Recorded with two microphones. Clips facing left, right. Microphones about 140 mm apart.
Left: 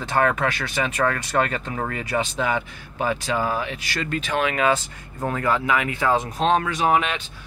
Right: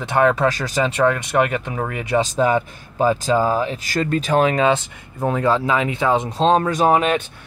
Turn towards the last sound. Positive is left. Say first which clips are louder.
# right 5 dB
turn(degrees=-40)  # may be behind; listen again after turning